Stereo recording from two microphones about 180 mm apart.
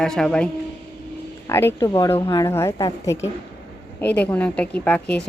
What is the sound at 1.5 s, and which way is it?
Speech, 15° left (ahead or behind).